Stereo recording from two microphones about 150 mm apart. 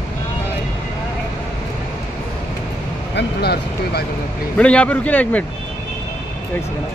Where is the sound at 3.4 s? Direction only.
90° left.